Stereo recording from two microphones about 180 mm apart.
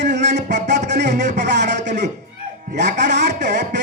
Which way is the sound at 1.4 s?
70° right (ahead or behind).